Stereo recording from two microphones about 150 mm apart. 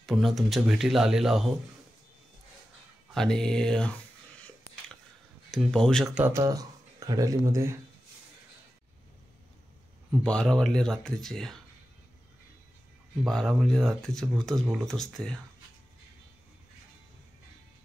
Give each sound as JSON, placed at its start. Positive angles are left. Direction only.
{"t": 0.0, "sound": "speech", "side_deg": 0}
{"t": 3.2, "sound": "speech", "side_deg": 5}
{"t": 5.5, "sound": "speech", "side_deg": 0}
{"t": 6.1, "sound": "speech", "side_deg": -10}
{"t": 6.4, "sound": "speech", "side_deg": -25}
{"t": 10.2, "sound": "speech", "side_deg": 5}
{"t": 13.2, "sound": "speech", "side_deg": 5}